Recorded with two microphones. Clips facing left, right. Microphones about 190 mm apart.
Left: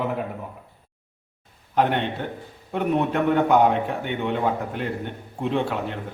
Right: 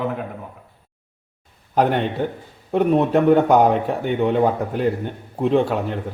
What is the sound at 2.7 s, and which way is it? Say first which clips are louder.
A man's voice: right 6 dB; 35° right (ahead or behind).